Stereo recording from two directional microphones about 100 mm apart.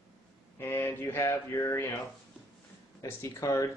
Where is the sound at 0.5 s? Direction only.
25° left (ahead or behind).